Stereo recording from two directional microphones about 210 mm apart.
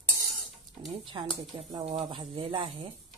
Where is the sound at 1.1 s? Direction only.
15° right (ahead or behind).